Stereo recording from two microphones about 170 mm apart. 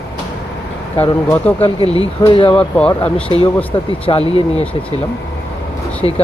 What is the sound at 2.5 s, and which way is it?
Speech, 10° left (ahead or behind).